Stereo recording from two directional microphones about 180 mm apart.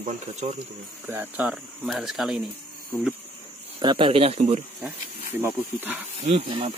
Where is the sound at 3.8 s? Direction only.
30° right (ahead or behind).